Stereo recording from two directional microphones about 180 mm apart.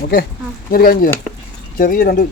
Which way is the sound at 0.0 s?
55° left (ahead or behind).